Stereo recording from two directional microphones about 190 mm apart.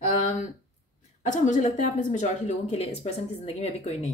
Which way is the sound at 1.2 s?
40° left (ahead or behind).